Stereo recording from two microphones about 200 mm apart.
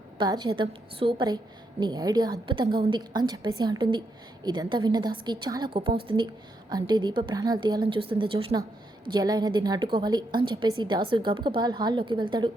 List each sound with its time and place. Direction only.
0.2 s a woman's voice: 20° right (ahead or behind)